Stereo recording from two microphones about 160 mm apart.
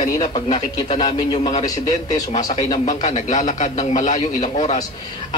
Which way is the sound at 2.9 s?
45° left (ahead or behind).